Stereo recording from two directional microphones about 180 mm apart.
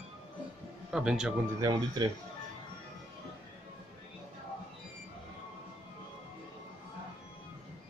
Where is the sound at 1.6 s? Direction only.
20° right (ahead or behind).